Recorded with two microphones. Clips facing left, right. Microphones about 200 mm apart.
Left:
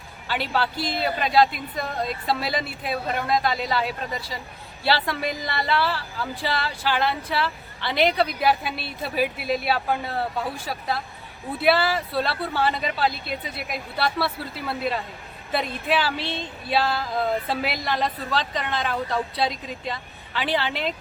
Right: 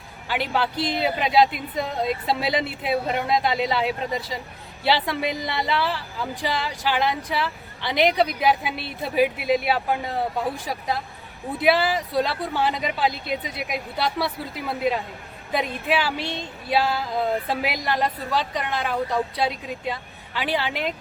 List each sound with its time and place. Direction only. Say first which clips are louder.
0.3 s a woman's voice: right 1 dB; 15° right (ahead or behind)